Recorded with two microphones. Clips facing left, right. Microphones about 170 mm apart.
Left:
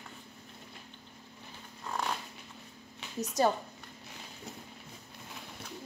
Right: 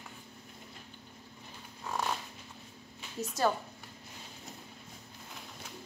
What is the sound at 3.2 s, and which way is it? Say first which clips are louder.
Speech: left 2 dB; 20° left (ahead or behind).